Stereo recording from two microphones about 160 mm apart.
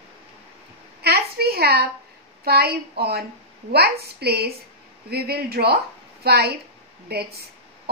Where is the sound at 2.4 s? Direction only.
80° right.